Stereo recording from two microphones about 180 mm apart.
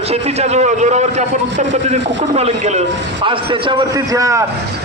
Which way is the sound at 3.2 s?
25° right (ahead or behind).